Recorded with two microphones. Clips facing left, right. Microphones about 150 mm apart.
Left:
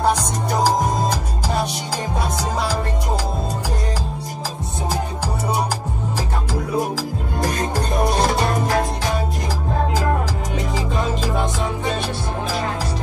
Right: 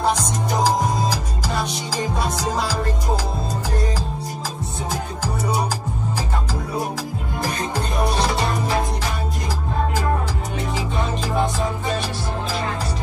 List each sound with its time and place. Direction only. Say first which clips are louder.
7.4 s music: left 3 dB; 45° left (ahead or behind)